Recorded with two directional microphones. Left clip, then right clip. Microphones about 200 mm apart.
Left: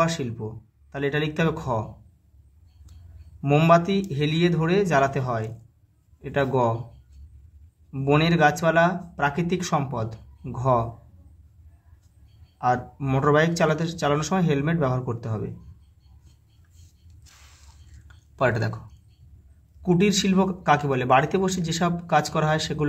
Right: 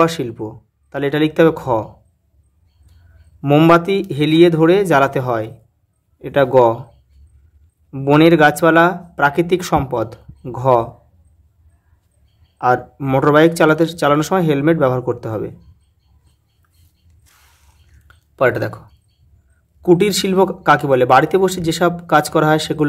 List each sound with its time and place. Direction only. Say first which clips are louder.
0.0 s a man's voice: right 9 dB; 40° right (ahead or behind)
3.3 s a man's voice: right 7 dB; 45° right (ahead or behind)
7.9 s a man's voice: right 11 dB; 45° right (ahead or behind)
12.5 s a man's voice: right 8 dB; 45° right (ahead or behind)
18.0 s a sound: right 8 dB; 30° right (ahead or behind)
19.8 s a man's voice: right 9 dB; 45° right (ahead or behind)